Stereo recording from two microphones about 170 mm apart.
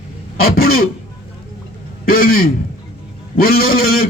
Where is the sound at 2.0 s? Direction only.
60° left (ahead or behind).